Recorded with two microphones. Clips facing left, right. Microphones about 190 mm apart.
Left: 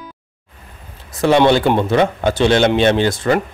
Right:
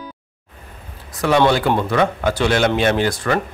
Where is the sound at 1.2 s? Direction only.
25° left (ahead or behind).